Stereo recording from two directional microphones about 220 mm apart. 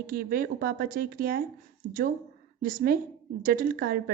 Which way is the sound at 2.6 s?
40° right (ahead or behind).